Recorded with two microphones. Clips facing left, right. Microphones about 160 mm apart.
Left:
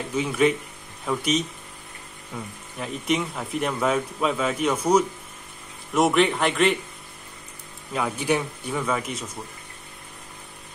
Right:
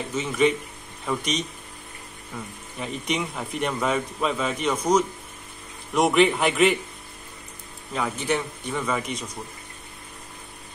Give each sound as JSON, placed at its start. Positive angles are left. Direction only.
{"t": 0.1, "sound": "a man's voice", "side_deg": 5}
{"t": 2.8, "sound": "a man's voice", "side_deg": 0}
{"t": 7.9, "sound": "a man's voice", "side_deg": 10}